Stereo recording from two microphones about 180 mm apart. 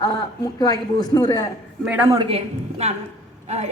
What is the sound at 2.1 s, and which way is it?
Speech, 25° right (ahead or behind).